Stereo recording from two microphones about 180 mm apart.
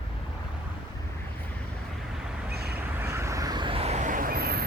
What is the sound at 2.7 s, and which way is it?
Vehicle, 15° right (ahead or behind).